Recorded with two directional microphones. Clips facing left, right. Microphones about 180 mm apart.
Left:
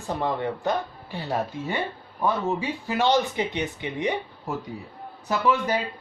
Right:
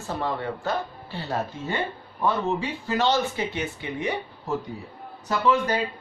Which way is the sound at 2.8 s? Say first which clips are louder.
Left 1 dB; 15° left (ahead or behind).